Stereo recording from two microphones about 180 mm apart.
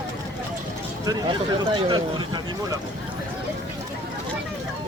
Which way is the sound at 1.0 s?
25° right (ahead or behind).